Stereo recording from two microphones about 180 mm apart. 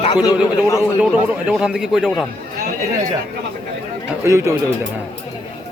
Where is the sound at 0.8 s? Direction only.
5° right (ahead or behind).